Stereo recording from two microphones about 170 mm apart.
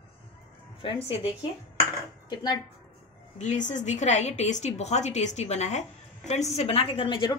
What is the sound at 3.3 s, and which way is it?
A woman's voice, 45° left (ahead or behind).